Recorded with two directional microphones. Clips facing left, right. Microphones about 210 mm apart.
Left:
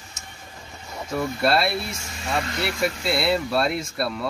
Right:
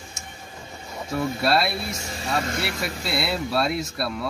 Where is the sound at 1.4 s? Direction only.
Centre (ahead or behind).